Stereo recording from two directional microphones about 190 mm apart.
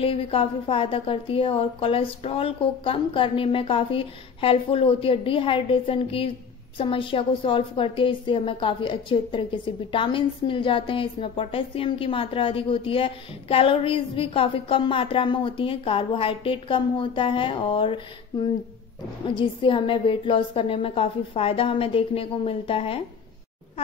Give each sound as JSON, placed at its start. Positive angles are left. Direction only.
{"t": 0.0, "sound": "a woman's voice", "side_deg": 30}